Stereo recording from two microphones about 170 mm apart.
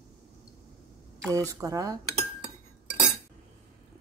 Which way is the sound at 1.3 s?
20° right (ahead or behind).